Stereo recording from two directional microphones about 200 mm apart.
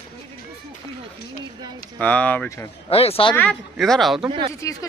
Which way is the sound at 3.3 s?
5° left (ahead or behind).